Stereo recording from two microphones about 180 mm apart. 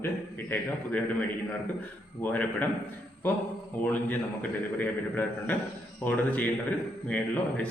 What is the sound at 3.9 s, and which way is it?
A man's voice, 10° left (ahead or behind).